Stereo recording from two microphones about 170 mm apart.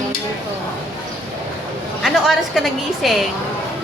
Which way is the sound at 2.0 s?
Centre (ahead or behind).